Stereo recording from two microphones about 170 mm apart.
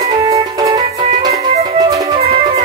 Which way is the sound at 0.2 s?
20° right (ahead or behind).